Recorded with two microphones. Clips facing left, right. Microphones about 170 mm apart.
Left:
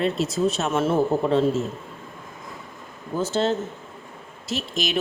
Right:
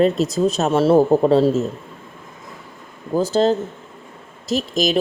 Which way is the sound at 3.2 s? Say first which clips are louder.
Right 6 dB; 35° right (ahead or behind).